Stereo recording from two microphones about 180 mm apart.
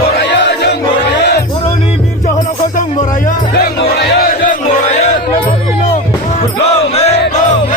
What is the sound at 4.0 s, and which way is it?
Crowd, 55° left (ahead or behind).